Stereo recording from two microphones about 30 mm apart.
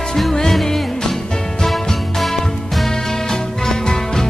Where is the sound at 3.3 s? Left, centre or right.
Centre.